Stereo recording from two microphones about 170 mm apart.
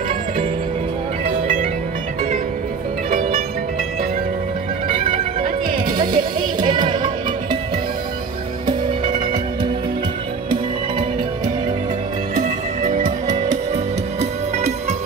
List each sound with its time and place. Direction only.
3.1 s music: 55° right (ahead or behind)
4.8 s music: 30° right (ahead or behind)
5.4 s music: 50° right (ahead or behind)
6.7 s music: 25° right (ahead or behind)
12.4 s music: 50° right (ahead or behind)